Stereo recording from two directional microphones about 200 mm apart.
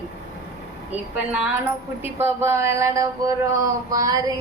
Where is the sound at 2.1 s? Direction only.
10° right (ahead or behind).